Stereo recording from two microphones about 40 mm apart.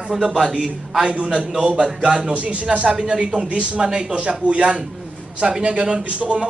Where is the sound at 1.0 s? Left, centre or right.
Right.